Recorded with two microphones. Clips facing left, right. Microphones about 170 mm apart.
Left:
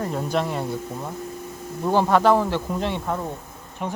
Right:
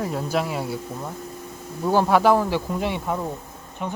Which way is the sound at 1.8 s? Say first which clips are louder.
Even; 5° right (ahead or behind).